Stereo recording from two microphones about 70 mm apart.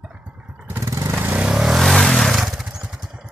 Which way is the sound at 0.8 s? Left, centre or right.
Right.